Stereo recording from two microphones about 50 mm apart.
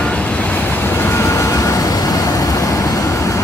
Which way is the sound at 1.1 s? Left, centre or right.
Left.